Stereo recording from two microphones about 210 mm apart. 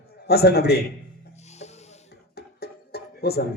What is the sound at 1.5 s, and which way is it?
Music, 30° left (ahead or behind).